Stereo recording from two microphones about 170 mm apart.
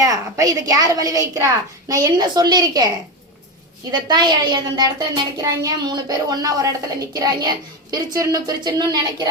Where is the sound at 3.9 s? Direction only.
25° right (ahead or behind).